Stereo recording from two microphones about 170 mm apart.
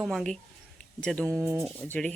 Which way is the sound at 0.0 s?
Centre (ahead or behind).